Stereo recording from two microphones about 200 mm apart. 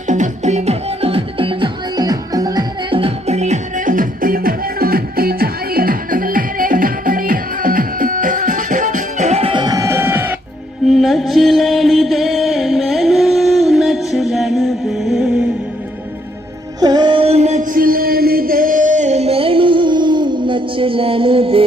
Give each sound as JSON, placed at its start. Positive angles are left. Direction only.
{"t": 0.1, "sound": "music", "side_deg": -35}
{"t": 10.8, "sound": "music", "side_deg": 0}
{"t": 16.8, "sound": "music", "side_deg": -20}